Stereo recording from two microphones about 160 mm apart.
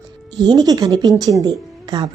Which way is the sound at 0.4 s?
25° right (ahead or behind).